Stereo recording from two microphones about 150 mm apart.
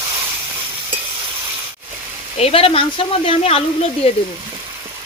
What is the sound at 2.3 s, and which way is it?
Speech, 40° left (ahead or behind).